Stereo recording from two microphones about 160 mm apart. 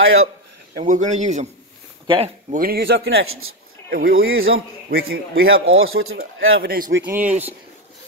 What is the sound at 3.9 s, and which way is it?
A man's voice, 65° right (ahead or behind).